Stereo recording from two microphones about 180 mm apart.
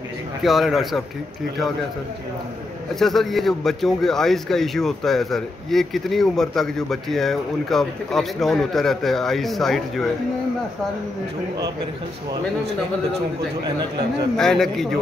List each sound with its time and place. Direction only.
0.4 s a man's voice: centre (ahead or behind)
3.0 s a man's voice: centre (ahead or behind)
13.6 s speech: 25° right (ahead or behind)
14.3 s a man's voice: 5° left (ahead or behind)